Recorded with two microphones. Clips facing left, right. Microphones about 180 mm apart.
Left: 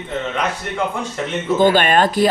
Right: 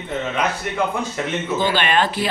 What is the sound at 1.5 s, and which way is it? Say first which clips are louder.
Speech: left 6 dB; 50° left (ahead or behind).